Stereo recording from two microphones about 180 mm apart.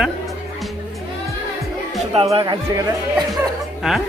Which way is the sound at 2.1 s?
35° right (ahead or behind).